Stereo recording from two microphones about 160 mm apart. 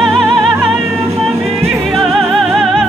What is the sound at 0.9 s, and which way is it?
Music, 20° right (ahead or behind).